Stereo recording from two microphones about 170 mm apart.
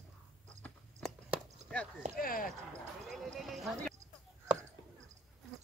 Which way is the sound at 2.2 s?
60° left (ahead or behind).